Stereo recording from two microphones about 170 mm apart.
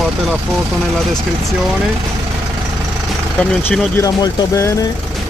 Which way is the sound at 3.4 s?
10° left (ahead or behind).